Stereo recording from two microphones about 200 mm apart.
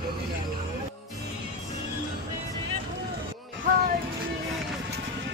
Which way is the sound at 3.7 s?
40° right (ahead or behind).